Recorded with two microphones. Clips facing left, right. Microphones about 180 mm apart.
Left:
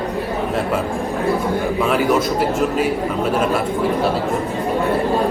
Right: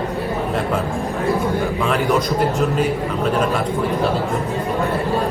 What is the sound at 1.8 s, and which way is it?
A man's voice, 5° left (ahead or behind).